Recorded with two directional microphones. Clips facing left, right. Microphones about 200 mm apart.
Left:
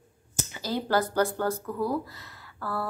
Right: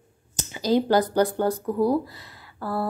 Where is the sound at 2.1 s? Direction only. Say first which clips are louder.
Right 2 dB; 15° right (ahead or behind).